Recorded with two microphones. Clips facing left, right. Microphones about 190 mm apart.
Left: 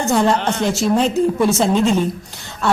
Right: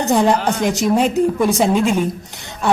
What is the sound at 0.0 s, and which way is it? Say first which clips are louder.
A woman's voice: right 1 dB; 15° right (ahead or behind).